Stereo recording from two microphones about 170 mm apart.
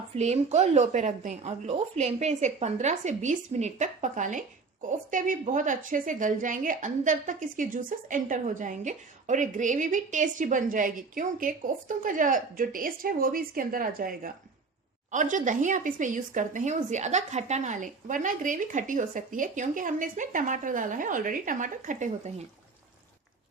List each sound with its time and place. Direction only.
0.2 s a woman's voice: 40° right (ahead or behind); by 14.3 s 60° right (ahead or behind)
15.1 s a woman's voice: 45° right (ahead or behind)